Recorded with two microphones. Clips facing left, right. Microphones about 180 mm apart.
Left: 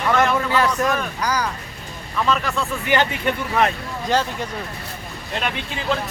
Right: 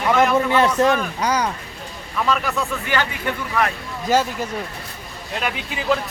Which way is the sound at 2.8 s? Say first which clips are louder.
Left 3 dB; 20° left (ahead or behind).